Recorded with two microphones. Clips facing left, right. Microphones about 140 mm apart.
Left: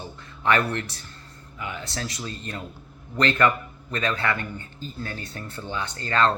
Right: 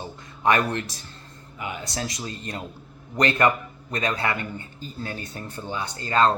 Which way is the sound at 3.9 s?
15° right (ahead or behind).